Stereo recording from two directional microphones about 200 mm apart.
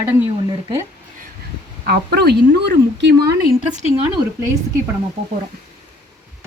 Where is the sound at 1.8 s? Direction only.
50° right (ahead or behind).